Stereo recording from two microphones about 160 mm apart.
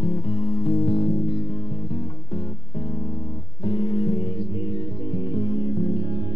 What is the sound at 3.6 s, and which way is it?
Music, 30° left (ahead or behind).